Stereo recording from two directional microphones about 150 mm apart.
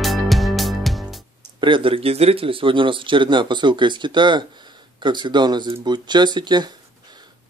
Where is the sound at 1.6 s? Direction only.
35° right (ahead or behind).